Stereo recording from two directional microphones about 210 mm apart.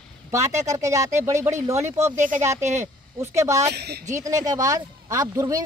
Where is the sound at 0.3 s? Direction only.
15° right (ahead or behind).